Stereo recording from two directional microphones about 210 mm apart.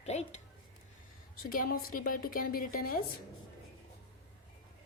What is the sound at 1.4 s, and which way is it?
A woman's voice, 45° left (ahead or behind).